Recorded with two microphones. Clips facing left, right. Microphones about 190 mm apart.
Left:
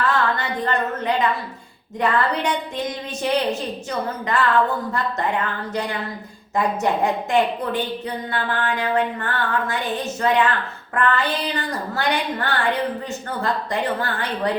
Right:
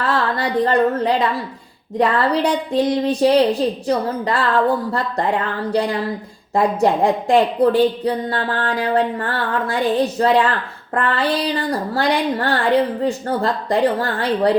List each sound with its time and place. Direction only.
0.0 s a woman's voice: 35° right (ahead or behind)